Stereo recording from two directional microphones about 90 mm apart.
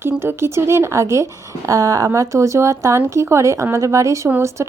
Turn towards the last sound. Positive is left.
turn(degrees=-30)  # may be behind; listen again after turning